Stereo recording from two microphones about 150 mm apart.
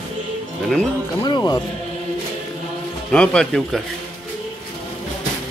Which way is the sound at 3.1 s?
5° left (ahead or behind).